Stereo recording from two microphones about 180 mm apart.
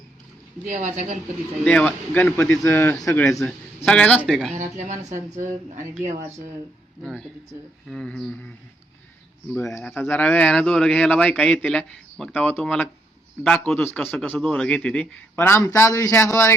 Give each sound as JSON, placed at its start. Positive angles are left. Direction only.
{"t": 0.7, "sound": "speech", "side_deg": -45}
{"t": 1.6, "sound": "a man's voice", "side_deg": 5}
{"t": 4.5, "sound": "speech", "side_deg": -40}
{"t": 7.9, "sound": "a man's voice", "side_deg": 5}
{"t": 9.7, "sound": "a man's voice", "side_deg": 10}